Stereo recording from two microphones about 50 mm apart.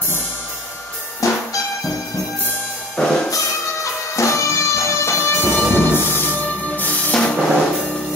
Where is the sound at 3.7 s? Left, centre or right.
Left.